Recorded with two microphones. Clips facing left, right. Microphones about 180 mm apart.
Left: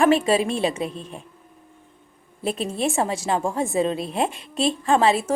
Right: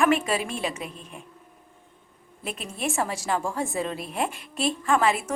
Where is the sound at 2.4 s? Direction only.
30° left (ahead or behind).